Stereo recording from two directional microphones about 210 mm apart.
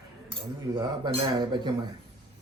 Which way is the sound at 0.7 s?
20° right (ahead or behind).